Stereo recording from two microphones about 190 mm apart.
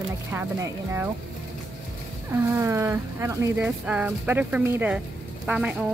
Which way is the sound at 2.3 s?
15° right (ahead or behind).